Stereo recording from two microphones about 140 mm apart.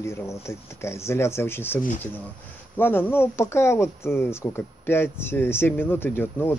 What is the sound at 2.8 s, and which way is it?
Speech, 15° left (ahead or behind).